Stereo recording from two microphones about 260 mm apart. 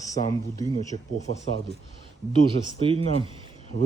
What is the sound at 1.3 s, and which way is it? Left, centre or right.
Speech, right.